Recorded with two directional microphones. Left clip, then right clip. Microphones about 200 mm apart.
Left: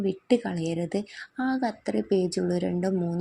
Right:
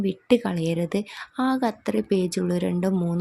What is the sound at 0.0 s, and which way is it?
Speech, 20° right (ahead or behind).